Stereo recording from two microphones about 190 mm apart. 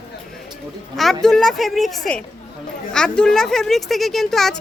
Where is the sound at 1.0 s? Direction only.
Centre (ahead or behind).